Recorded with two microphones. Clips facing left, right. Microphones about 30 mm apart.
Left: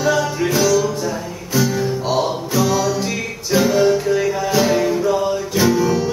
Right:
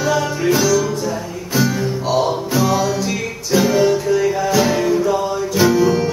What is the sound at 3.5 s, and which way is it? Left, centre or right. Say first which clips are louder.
Music: even; centre.